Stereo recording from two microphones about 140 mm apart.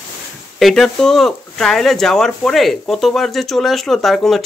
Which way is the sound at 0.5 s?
Centre (ahead or behind).